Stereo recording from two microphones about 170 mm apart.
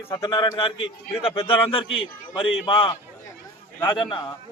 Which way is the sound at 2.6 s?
30° left (ahead or behind).